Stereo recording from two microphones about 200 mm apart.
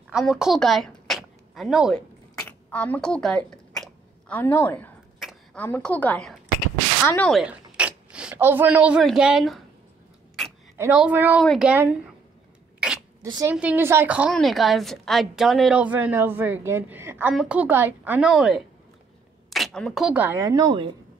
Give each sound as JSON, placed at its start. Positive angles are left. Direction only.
{"t": 0.1, "sound": "speech", "side_deg": 0}
{"t": 2.4, "sound": "a sound", "side_deg": 10}
{"t": 5.2, "sound": "a woman's voice", "side_deg": 5}
{"t": 7.4, "sound": "speech", "side_deg": -5}
{"t": 10.4, "sound": "a sound", "side_deg": 0}
{"t": 10.8, "sound": "a woman's voice", "side_deg": -5}
{"t": 13.2, "sound": "a woman's voice", "side_deg": -15}